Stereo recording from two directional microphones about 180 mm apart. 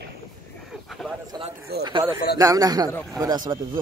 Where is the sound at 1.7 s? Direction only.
65° right (ahead or behind).